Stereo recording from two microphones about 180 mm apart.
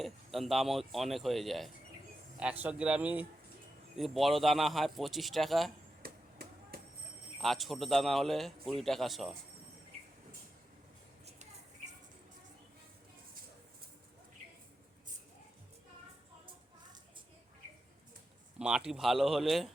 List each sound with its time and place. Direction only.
0.0 s a man's voice: centre (ahead or behind)
6.0 s chop: 55° right (ahead or behind)
7.4 s a man's voice: centre (ahead or behind)
18.6 s a man's voice: 5° right (ahead or behind)